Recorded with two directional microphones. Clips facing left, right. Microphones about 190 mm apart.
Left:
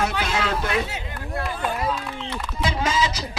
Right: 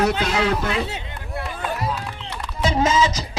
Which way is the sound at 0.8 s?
25° right (ahead or behind).